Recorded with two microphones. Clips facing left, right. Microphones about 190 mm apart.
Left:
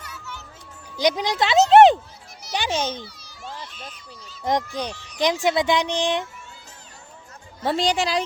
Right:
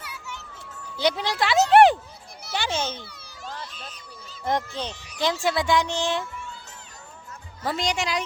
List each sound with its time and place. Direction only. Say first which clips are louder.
0.0 s a sound: even; 10° right (ahead or behind)
0.9 s a child's voice: left 3 dB; 15° left (ahead or behind)
4.4 s speech: left 3 dB; 15° left (ahead or behind)
7.6 s a woman's voice: left 5 dB; 30° left (ahead or behind)